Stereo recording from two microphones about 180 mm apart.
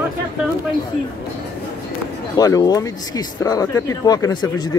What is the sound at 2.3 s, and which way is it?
Speech, 20° left (ahead or behind).